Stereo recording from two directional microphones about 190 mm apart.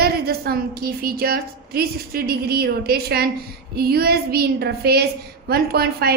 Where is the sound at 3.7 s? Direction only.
55° right (ahead or behind).